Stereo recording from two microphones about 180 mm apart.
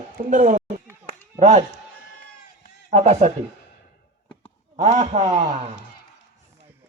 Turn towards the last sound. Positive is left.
turn(degrees=-35)  # may be behind; listen again after turning